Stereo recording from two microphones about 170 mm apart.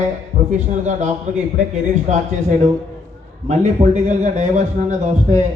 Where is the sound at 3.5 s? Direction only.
45° right (ahead or behind).